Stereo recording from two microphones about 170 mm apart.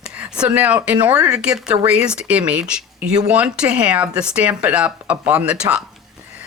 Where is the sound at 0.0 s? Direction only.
5° right (ahead or behind).